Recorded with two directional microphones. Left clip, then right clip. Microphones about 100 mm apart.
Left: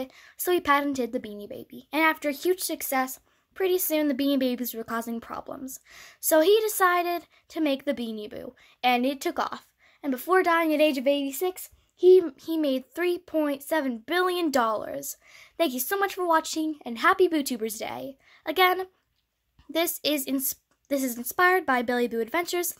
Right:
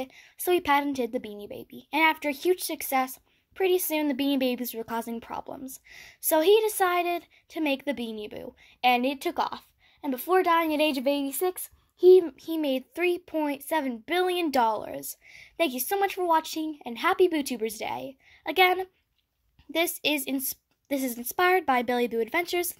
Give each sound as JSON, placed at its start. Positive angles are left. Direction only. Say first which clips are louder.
{"t": 0.0, "sound": "speech", "louder": "even", "side_deg": 25}